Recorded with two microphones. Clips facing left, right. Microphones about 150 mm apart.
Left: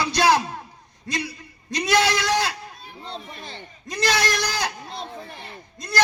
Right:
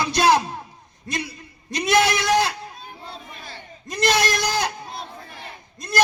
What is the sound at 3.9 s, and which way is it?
Speech, 20° right (ahead or behind).